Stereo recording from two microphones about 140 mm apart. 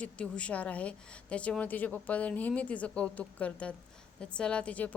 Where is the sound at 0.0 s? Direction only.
10° left (ahead or behind).